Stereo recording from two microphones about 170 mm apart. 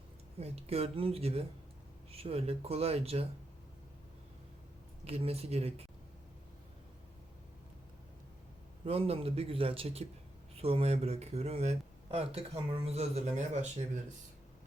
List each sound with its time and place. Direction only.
0.3 s speech: 35° right (ahead or behind)
5.0 s speech: 35° right (ahead or behind)
8.8 s speech: 35° right (ahead or behind)